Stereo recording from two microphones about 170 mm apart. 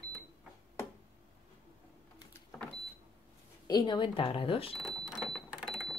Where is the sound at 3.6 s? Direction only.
25° left (ahead or behind).